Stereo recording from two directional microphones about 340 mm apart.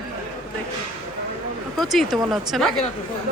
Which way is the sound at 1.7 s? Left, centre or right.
Centre.